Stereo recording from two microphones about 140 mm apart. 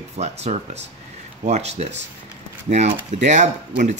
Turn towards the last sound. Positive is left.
turn(degrees=-55)  # may be behind; listen again after turning